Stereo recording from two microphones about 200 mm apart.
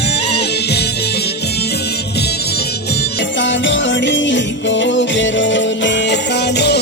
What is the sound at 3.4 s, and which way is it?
Music, 65° left (ahead or behind).